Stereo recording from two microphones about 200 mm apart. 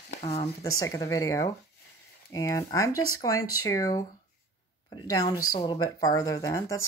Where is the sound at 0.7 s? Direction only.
15° left (ahead or behind).